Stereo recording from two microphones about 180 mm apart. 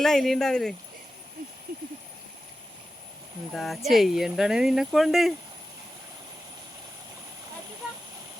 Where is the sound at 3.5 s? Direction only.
Centre (ahead or behind).